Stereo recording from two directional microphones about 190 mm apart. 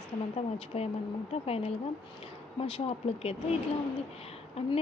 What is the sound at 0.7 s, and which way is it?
Speech, 35° left (ahead or behind).